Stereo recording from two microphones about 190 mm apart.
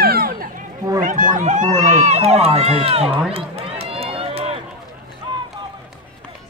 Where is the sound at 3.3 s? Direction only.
30° right (ahead or behind).